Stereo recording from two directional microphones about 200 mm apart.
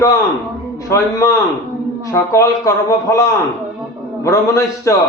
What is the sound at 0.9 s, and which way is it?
A man's voice, 15° left (ahead or behind).